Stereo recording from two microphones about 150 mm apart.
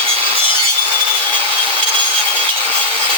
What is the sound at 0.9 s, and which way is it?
Sawing, 35° right (ahead or behind).